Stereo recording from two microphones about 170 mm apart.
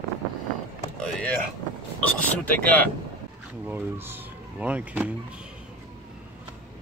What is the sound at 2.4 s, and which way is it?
Speech, 10° left (ahead or behind).